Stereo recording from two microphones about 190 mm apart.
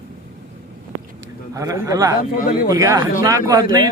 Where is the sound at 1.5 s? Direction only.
20° right (ahead or behind).